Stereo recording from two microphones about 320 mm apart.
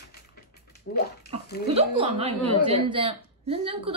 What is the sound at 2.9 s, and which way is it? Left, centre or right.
A woman's voice, centre.